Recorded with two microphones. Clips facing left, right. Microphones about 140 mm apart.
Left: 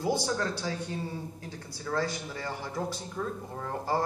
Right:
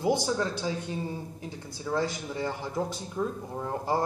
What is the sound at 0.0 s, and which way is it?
Speech, 20° right (ahead or behind).